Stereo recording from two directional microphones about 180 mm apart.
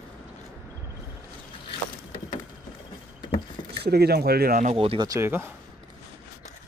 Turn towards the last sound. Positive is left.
turn(degrees=-15)  # may be behind; listen again after turning